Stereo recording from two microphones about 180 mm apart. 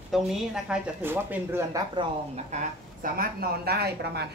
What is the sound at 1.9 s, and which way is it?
A woman's voice, 40° right (ahead or behind).